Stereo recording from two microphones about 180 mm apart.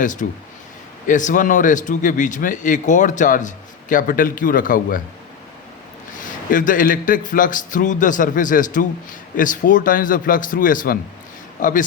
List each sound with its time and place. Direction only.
0.0 s speech: 45° left (ahead or behind)
6.1 s speech: 45° left (ahead or behind)